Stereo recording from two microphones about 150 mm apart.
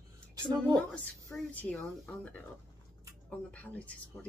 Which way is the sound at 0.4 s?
30° right (ahead or behind).